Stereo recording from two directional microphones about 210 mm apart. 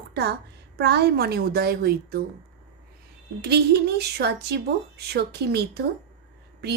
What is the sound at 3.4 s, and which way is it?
A woman's voice, 50° right (ahead or behind).